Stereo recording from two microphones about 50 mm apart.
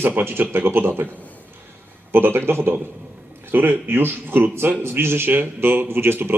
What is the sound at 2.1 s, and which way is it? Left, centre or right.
Speech, right.